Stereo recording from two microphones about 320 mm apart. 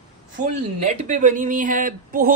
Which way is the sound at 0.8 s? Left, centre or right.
Right.